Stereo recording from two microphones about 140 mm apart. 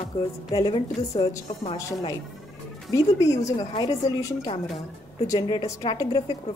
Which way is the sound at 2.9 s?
20° left (ahead or behind).